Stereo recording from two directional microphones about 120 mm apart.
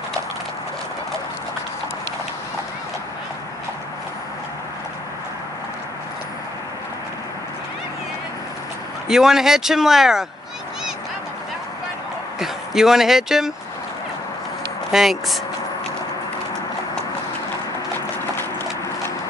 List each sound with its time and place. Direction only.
9.1 s speech: 5° right (ahead or behind)
12.4 s speech: 5° right (ahead or behind)
14.9 s speech: 5° right (ahead or behind)
17.9 s clip-clop: 20° left (ahead or behind)